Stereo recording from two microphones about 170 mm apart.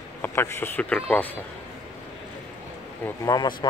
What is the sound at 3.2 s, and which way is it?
Speech, 25° left (ahead or behind).